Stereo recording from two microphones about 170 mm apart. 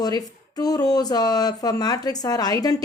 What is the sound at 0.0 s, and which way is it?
Speech, 20° left (ahead or behind).